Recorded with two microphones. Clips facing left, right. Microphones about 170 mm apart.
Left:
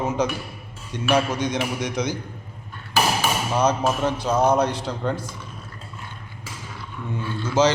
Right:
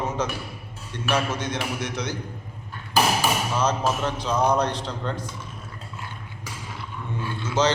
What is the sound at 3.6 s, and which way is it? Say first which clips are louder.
A man's voice: left 4 dB; 10° left (ahead or behind).